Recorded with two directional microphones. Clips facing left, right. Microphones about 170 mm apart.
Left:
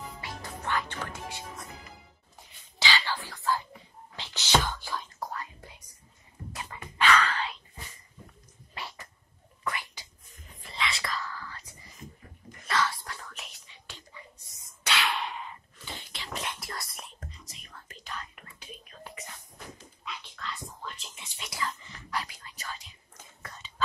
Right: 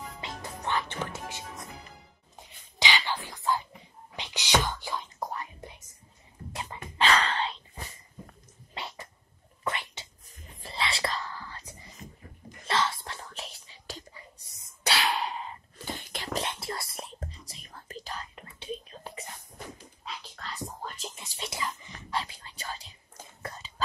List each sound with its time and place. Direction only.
0.2 s music: 20° right (ahead or behind)
2.3 s a sound: 20° right (ahead or behind)
4.2 s whispering: 15° right (ahead or behind)
6.5 s music: 30° right (ahead or behind)
9.7 s whispering: 25° right (ahead or behind)
14.9 s a sound: 35° right (ahead or behind)
15.8 s whispering: 50° right (ahead or behind)
16.3 s whispering: 30° right (ahead or behind)
20.1 s dog: 40° right (ahead or behind)
21.5 s dog: 20° right (ahead or behind)
22.1 s whispering: 25° right (ahead or behind)